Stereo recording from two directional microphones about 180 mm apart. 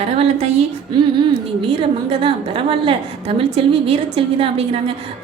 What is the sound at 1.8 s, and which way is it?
A woman's voice, 30° right (ahead or behind).